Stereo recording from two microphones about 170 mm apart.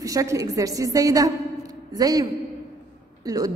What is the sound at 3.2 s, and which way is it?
Speech, 20° right (ahead or behind).